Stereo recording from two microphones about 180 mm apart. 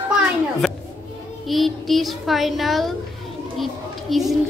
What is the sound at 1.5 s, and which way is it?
A child's voice, centre (ahead or behind).